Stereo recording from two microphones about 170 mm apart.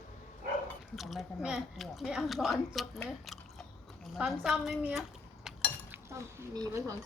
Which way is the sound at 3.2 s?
Centre (ahead or behind).